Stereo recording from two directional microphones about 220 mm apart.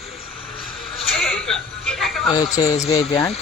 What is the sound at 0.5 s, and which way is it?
Vehicle, 25° left (ahead or behind).